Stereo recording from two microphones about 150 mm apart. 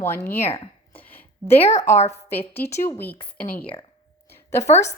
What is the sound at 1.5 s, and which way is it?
Speech, 50° left (ahead or behind).